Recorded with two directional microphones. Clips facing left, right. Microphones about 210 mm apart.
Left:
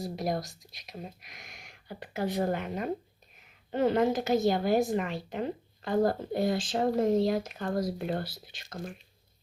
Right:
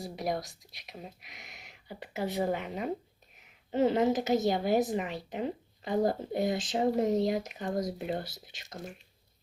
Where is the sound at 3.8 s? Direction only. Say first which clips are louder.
Even; 25° right (ahead or behind).